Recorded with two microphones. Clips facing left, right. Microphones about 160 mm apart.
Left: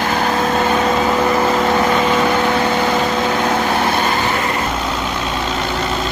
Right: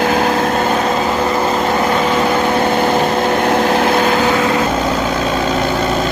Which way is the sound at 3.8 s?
90° right.